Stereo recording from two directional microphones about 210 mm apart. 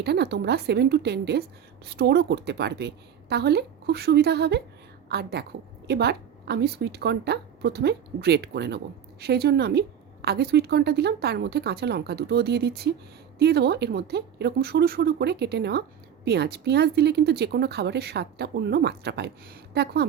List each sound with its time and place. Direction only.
0.0 s a woman's voice: 50° right (ahead or behind)